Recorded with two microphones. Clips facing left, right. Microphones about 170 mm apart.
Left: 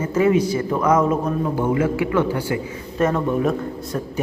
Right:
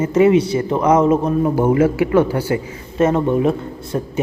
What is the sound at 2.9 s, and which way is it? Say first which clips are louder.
Speech: right 4 dB; 25° right (ahead or behind).